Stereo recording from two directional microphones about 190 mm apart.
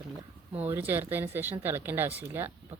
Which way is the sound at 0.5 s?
10° right (ahead or behind).